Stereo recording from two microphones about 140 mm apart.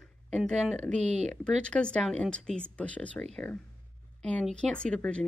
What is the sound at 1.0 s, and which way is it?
Speech, 55° right (ahead or behind).